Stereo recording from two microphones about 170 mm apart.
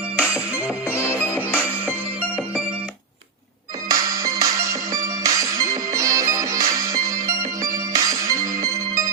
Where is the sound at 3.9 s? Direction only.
20° right (ahead or behind).